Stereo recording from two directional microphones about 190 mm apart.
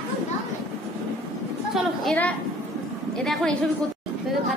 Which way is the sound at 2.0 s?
5° left (ahead or behind).